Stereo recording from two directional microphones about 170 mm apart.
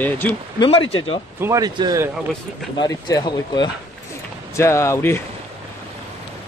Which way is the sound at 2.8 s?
20° left (ahead or behind).